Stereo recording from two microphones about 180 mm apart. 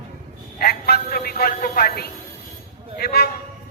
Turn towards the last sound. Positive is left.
turn(degrees=60)  # may be behind; listen again after turning